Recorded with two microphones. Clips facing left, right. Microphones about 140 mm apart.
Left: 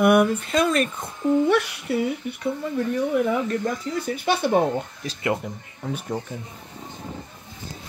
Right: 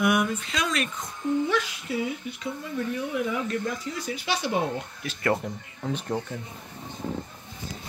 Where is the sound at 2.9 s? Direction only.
50° left (ahead or behind).